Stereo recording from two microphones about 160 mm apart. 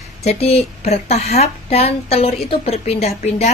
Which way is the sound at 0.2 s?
40° left (ahead or behind).